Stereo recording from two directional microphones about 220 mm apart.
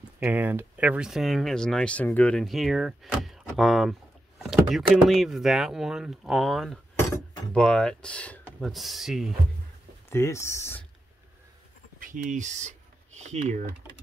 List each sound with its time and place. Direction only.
0.2 s speech: 5° right (ahead or behind)
4.4 s a sound: centre (ahead or behind)
5.0 s speech: centre (ahead or behind)
10.0 s speech: 10° left (ahead or behind)
12.0 s speech: 35° right (ahead or behind)